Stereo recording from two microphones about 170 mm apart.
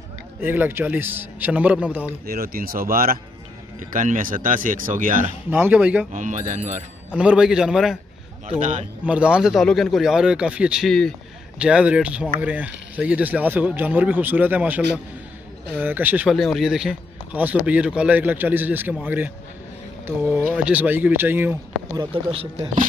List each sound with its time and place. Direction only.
0.4 s speech: 10° right (ahead or behind)
2.2 s speech: 60° right (ahead or behind)
5.5 s speech: 10° right (ahead or behind)
6.1 s speech: 50° right (ahead or behind)
7.2 s a man's voice: 5° right (ahead or behind)
9.0 s speech: 5° right (ahead or behind)
20.4 s speech: 10° right (ahead or behind)
22.1 s speech: 35° right (ahead or behind)